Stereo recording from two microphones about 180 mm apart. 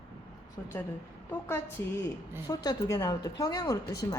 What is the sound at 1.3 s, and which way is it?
A woman's voice, 10° left (ahead or behind).